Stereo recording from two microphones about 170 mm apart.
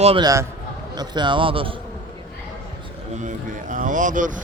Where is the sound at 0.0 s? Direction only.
35° right (ahead or behind).